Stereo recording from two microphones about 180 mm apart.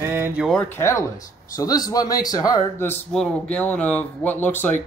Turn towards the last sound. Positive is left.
turn(degrees=10)  # may be behind; listen again after turning